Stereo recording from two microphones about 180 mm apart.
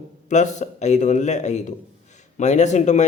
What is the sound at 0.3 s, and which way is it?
Speech, 40° left (ahead or behind).